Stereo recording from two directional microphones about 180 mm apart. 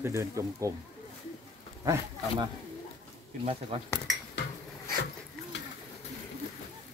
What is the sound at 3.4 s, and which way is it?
Speech, 30° right (ahead or behind).